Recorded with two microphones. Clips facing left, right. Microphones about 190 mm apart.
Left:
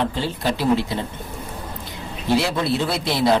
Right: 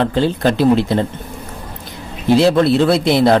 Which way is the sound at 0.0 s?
70° right (ahead or behind).